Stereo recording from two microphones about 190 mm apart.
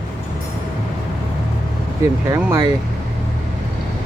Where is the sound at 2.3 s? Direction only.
15° right (ahead or behind).